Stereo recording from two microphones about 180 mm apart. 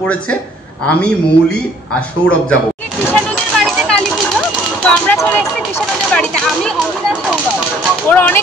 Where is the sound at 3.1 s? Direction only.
5° left (ahead or behind).